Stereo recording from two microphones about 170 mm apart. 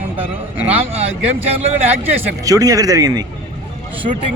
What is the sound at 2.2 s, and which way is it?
Speech, 20° right (ahead or behind).